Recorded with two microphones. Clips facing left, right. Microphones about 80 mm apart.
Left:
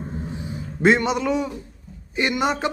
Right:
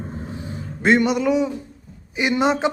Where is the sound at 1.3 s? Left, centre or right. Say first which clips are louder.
Right 4 dB; centre.